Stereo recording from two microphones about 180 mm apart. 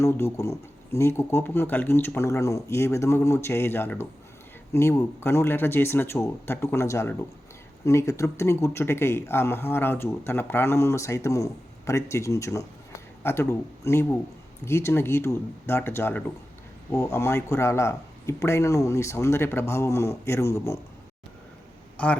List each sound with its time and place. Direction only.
0.0 s speech: 15° left (ahead or behind)
21.9 s a man's voice: 5° left (ahead or behind)